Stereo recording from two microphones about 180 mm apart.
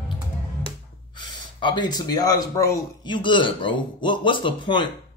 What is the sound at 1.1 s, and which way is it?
Speech, 25° left (ahead or behind).